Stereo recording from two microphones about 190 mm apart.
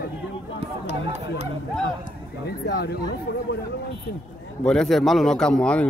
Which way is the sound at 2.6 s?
55° left (ahead or behind).